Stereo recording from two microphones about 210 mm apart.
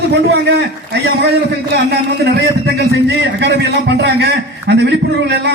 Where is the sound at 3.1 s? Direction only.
55° right (ahead or behind).